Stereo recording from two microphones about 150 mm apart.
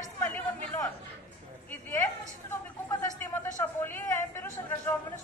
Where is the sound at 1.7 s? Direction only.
15° left (ahead or behind).